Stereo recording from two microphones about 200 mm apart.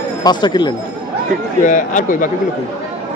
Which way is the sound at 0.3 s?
20° left (ahead or behind).